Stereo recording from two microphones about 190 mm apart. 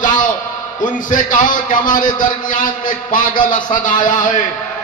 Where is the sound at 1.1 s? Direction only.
45° left (ahead or behind).